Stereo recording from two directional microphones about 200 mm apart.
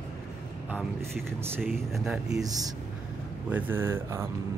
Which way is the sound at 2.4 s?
20° right (ahead or behind).